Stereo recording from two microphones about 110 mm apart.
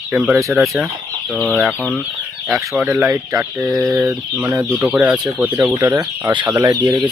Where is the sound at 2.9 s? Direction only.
25° right (ahead or behind).